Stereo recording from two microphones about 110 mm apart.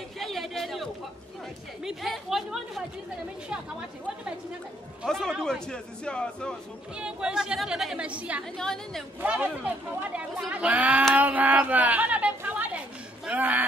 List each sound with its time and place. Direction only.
0.2 s a sound: centre (ahead or behind)
1.9 s speech: centre (ahead or behind)
5.0 s speech: 5° left (ahead or behind)
7.0 s speech: 10° right (ahead or behind)
8.5 s speech: 5° left (ahead or behind)
9.2 s speech: 15° right (ahead or behind)
11.1 s chatter: 15° right (ahead or behind)